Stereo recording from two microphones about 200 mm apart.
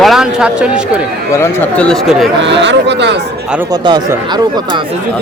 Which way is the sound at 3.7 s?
20° right (ahead or behind).